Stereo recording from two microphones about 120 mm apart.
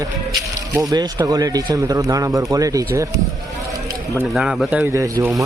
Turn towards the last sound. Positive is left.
turn(degrees=0)  # may be behind; listen again after turning